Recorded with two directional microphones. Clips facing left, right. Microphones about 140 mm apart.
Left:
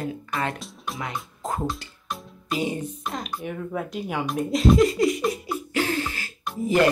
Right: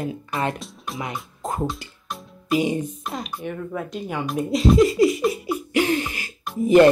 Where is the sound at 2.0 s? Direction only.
Centre (ahead or behind).